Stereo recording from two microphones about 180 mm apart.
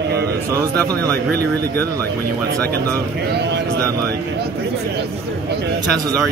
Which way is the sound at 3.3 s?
70° right (ahead or behind).